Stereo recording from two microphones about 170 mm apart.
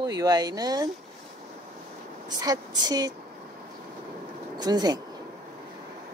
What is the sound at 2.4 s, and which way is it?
Speech, 20° right (ahead or behind).